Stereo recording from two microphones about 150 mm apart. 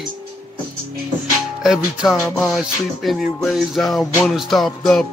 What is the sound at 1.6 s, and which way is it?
Music, 5° right (ahead or behind).